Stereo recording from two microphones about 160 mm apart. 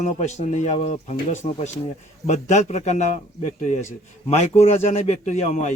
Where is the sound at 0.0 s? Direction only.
45° left (ahead or behind).